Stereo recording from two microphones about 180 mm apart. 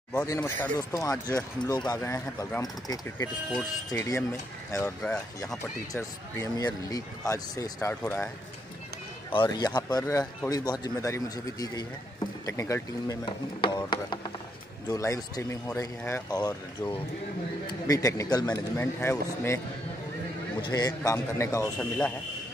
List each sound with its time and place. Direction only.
0.2 s speech: 15° left (ahead or behind)
9.3 s speech: 25° left (ahead or behind)
20.6 s speech: 20° left (ahead or behind)
21.7 s speech: 5° left (ahead or behind)